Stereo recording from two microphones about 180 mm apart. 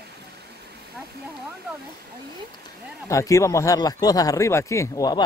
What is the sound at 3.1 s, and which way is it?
Speech, 15° left (ahead or behind).